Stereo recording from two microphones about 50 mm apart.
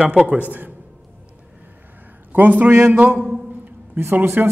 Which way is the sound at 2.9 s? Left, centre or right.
Right.